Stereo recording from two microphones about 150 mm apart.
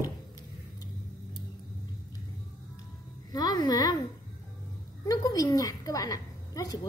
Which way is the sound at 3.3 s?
25° left (ahead or behind).